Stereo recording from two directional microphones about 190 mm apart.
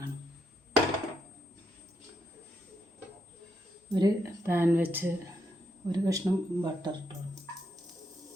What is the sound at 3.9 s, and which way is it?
Speech, 20° right (ahead or behind).